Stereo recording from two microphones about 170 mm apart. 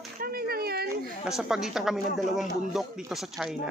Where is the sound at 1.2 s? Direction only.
5° right (ahead or behind).